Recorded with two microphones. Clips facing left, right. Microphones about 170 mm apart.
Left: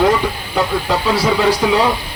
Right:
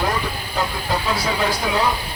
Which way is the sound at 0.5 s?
75° left (ahead or behind).